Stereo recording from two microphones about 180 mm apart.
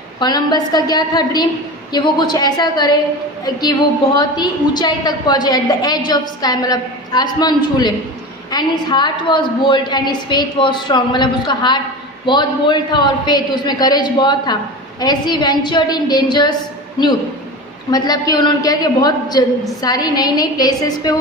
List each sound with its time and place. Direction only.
0.2 s a woman's voice: 25° left (ahead or behind)
17.9 s a woman's voice: 20° left (ahead or behind)